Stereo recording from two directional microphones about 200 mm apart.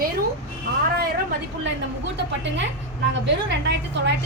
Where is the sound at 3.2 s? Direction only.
60° right (ahead or behind).